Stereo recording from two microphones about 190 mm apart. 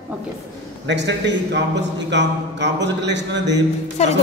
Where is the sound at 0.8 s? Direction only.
65° right (ahead or behind).